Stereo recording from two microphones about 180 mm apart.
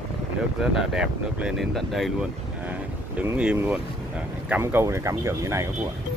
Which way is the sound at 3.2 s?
5° right (ahead or behind).